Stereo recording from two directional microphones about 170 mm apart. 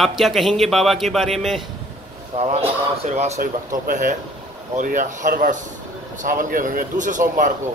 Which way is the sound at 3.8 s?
50° right (ahead or behind).